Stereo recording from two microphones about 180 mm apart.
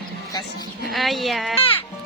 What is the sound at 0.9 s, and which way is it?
Speech, centre (ahead or behind).